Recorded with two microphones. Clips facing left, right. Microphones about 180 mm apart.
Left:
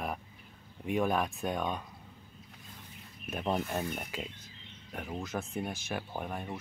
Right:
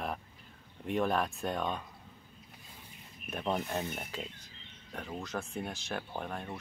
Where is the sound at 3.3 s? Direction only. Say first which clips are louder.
Left 1 dB; 5° left (ahead or behind).